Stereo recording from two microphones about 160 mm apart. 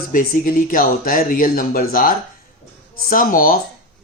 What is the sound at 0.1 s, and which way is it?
Speech, 60° left (ahead or behind).